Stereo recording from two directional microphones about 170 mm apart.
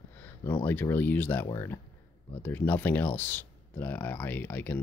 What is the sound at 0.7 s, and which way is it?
Speech, 10° left (ahead or behind).